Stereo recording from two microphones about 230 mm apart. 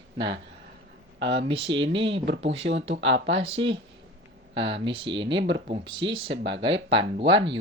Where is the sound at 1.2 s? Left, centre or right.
Right.